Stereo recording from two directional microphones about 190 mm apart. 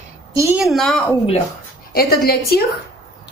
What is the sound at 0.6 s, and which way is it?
Speech, centre (ahead or behind).